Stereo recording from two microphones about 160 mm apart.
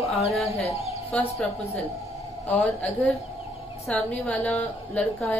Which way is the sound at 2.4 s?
10° left (ahead or behind).